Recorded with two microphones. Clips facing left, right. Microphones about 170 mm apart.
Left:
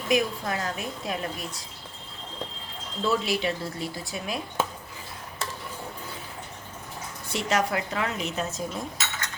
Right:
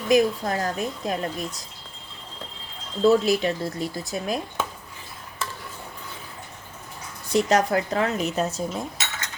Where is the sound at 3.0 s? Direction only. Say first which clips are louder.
Right 7 dB; 40° right (ahead or behind).